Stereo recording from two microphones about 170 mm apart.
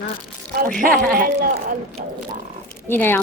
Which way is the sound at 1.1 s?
60° right (ahead or behind).